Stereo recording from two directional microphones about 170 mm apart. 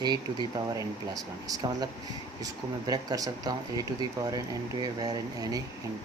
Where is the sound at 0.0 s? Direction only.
25° right (ahead or behind).